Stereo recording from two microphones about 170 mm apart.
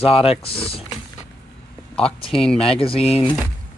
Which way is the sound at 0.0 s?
35° left (ahead or behind).